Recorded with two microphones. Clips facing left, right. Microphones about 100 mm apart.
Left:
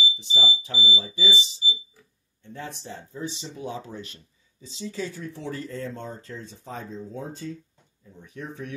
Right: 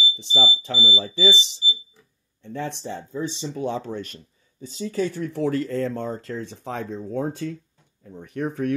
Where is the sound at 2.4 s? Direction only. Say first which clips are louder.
Right 7 dB; 90° right.